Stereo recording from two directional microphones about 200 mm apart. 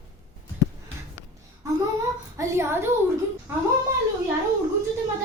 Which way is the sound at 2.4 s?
15° right (ahead or behind).